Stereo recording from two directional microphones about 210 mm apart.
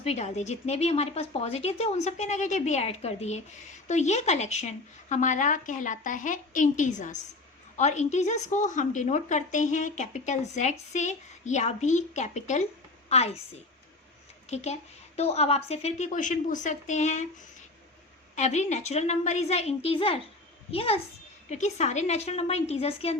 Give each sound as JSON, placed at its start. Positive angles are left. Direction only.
{"t": 0.0, "sound": "a woman's voice", "side_deg": 30}
{"t": 14.5, "sound": "speech", "side_deg": 30}
{"t": 18.3, "sound": "a child's voice", "side_deg": 35}